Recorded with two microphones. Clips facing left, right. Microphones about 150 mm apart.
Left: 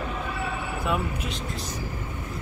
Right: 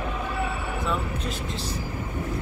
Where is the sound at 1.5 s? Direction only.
30° right (ahead or behind).